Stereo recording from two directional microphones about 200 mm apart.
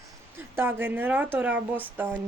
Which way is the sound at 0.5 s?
10° right (ahead or behind).